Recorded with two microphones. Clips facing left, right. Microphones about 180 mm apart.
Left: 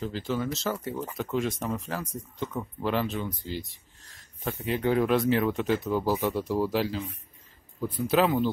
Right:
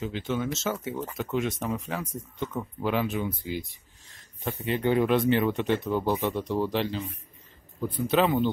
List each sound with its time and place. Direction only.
0.0 s speech: centre (ahead or behind)
3.3 s speech: 55° right (ahead or behind)
4.0 s speech: centre (ahead or behind)
8.1 s speech: centre (ahead or behind)